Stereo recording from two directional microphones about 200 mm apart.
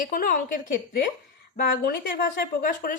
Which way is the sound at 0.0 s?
45° left (ahead or behind).